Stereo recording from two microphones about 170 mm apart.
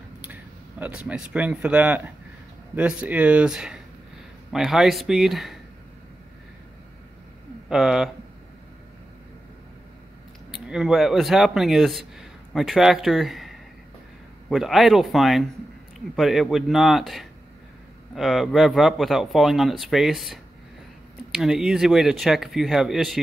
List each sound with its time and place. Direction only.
0.2 s speech: 10° right (ahead or behind)
7.7 s speech: 5° right (ahead or behind)
10.5 s speech: 5° right (ahead or behind)